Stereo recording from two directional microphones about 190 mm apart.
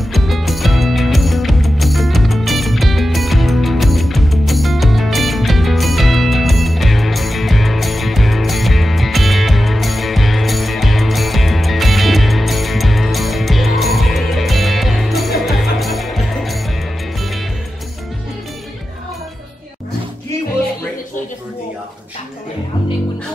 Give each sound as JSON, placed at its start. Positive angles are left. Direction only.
{"t": 0.1, "sound": "music", "side_deg": 0}